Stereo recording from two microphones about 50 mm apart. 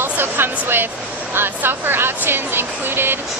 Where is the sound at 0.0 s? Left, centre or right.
Right.